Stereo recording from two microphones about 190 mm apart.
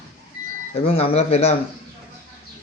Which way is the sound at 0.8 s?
30° left (ahead or behind).